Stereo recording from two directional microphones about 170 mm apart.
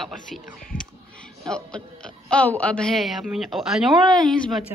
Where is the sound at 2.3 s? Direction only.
10° left (ahead or behind).